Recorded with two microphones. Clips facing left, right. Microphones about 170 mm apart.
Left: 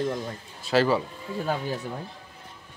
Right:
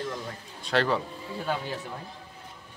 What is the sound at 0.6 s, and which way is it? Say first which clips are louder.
Speech: left 4 dB; 5° left (ahead or behind).